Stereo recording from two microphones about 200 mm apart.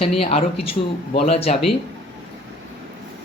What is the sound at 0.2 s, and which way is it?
Speech, 30° left (ahead or behind).